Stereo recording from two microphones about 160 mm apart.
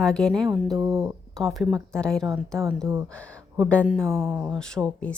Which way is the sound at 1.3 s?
Centre (ahead or behind).